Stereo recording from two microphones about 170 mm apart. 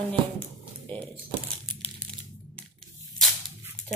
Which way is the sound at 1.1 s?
35° right (ahead or behind).